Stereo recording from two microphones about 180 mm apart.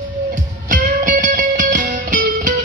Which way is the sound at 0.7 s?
50° right (ahead or behind).